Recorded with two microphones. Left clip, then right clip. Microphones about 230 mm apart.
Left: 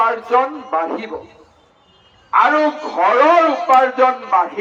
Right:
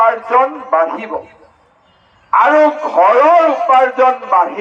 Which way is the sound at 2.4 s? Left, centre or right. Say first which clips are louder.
Right 4 dB; right.